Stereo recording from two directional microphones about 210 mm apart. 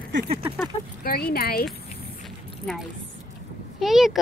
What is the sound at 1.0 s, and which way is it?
Speech, 45° left (ahead or behind).